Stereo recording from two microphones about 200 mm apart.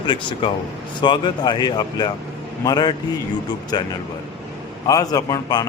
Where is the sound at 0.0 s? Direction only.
25° left (ahead or behind).